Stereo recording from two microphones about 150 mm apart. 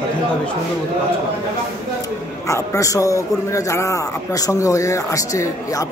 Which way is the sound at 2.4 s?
20° left (ahead or behind).